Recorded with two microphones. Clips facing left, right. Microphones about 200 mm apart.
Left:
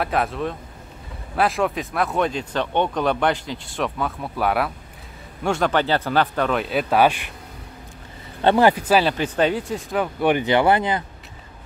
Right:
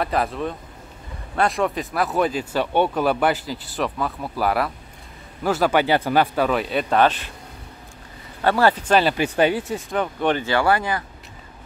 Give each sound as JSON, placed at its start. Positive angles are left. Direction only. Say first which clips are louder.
{"t": 0.0, "sound": "speech", "louder": "even", "side_deg": 0}
{"t": 8.4, "sound": "speech", "louder": "left 2 dB", "side_deg": 20}
{"t": 9.1, "sound": "speech", "louder": "right 1 dB", "side_deg": -10}
{"t": 10.2, "sound": "speech", "louder": "left 3 dB", "side_deg": 15}